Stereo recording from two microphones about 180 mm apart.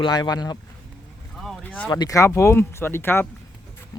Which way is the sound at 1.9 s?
20° left (ahead or behind).